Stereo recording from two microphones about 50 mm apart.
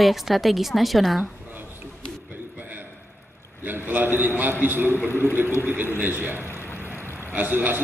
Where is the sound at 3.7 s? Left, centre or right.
Right.